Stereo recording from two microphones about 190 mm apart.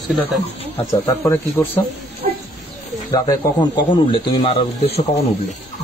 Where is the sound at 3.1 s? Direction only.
25° left (ahead or behind).